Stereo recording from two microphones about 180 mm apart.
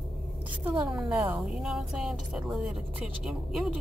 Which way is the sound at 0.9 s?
5° right (ahead or behind).